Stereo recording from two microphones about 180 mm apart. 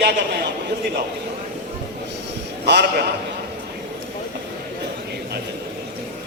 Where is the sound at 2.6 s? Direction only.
70° right (ahead or behind).